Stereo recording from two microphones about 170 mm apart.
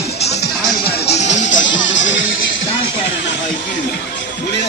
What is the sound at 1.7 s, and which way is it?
Music, 90° left.